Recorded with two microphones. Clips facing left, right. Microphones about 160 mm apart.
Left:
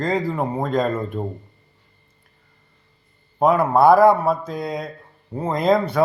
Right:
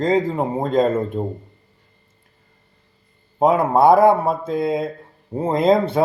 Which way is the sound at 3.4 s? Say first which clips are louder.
Right 1 dB; 25° right (ahead or behind).